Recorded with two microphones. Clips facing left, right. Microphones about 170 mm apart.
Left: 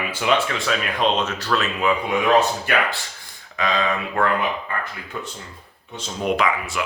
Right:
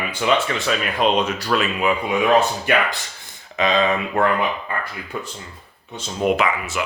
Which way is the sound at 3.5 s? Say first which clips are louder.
Right 4 dB; 20° right (ahead or behind).